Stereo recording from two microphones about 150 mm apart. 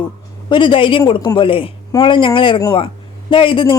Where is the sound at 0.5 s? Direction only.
35° left (ahead or behind).